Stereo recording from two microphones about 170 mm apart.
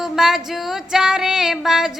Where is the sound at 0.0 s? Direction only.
5° right (ahead or behind).